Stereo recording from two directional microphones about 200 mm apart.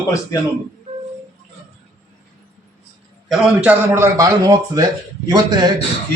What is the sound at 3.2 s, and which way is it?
A man's voice, 5° right (ahead or behind).